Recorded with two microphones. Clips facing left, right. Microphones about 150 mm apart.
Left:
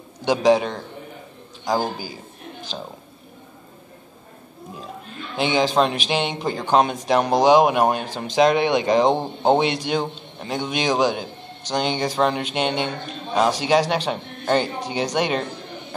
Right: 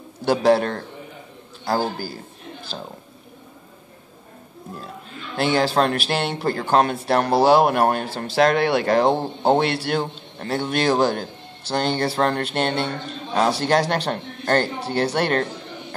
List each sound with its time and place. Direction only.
0.2 s a man's voice: 15° left (ahead or behind)
5.3 s a man's voice: 15° left (ahead or behind)